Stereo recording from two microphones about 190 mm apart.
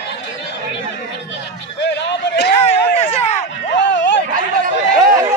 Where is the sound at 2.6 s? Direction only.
35° left (ahead or behind).